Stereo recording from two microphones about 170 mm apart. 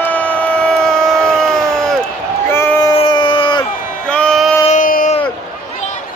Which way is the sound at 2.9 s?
30° left (ahead or behind).